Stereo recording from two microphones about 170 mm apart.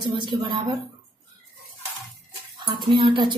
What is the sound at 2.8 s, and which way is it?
Speech, 30° right (ahead or behind).